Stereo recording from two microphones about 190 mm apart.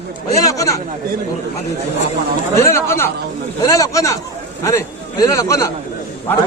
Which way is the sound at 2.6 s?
15° left (ahead or behind).